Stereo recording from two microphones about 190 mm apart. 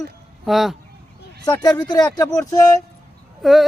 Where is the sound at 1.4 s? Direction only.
20° left (ahead or behind).